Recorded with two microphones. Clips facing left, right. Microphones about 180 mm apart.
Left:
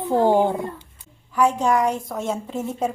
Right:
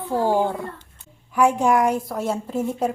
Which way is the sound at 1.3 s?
10° right (ahead or behind).